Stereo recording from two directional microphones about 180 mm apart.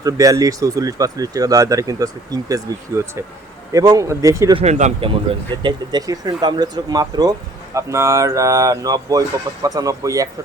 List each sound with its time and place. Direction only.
0.0 s speech: 20° right (ahead or behind)
4.5 s speech: 40° right (ahead or behind)
5.6 s speech: 20° right (ahead or behind)